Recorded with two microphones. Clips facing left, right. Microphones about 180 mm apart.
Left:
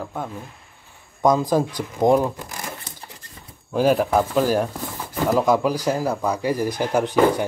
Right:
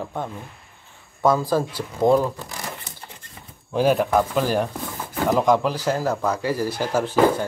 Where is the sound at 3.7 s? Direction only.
5° left (ahead or behind).